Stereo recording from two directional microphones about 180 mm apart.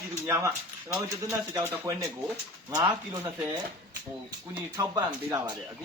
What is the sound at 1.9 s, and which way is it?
Speech, 20° right (ahead or behind).